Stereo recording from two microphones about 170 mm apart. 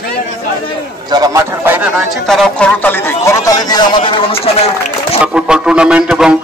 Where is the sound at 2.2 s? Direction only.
5° left (ahead or behind); by 4.6 s 35° left (ahead or behind).